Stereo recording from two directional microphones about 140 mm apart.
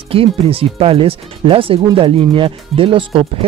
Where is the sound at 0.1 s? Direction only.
40° right (ahead or behind).